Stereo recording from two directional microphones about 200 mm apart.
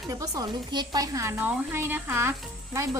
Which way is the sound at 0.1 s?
15° right (ahead or behind).